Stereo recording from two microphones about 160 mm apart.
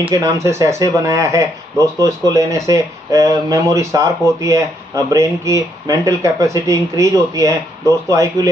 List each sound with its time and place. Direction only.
0.1 s speech: 20° right (ahead or behind)